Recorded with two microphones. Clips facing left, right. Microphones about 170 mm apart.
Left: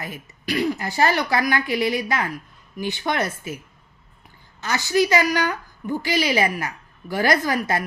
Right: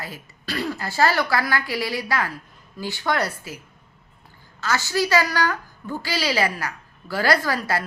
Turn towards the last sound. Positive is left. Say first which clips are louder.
# left 2 dB
turn(degrees=20)  # may be behind; listen again after turning